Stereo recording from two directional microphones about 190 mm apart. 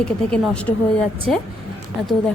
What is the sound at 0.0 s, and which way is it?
Speech, 5° left (ahead or behind).